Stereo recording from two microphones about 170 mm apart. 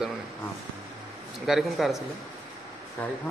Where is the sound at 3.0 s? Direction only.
10° left (ahead or behind).